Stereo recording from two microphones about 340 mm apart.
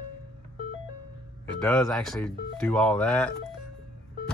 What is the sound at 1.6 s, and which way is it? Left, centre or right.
Speech, centre.